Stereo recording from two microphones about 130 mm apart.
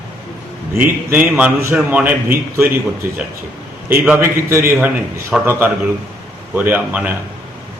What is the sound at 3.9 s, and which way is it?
A man's voice, 15° right (ahead or behind).